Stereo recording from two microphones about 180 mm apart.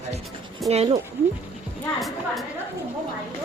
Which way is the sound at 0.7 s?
35° right (ahead or behind).